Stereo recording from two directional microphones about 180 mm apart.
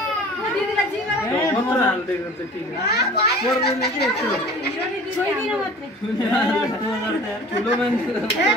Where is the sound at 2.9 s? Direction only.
65° left (ahead or behind).